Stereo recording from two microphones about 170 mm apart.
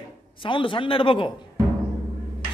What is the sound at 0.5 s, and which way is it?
Speech, 30° left (ahead or behind).